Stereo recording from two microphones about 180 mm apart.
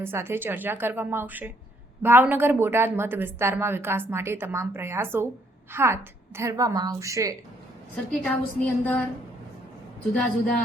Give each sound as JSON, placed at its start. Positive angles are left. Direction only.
{"t": 0.0, "sound": "a woman's voice", "side_deg": -15}
{"t": 7.9, "sound": "a woman's voice", "side_deg": 5}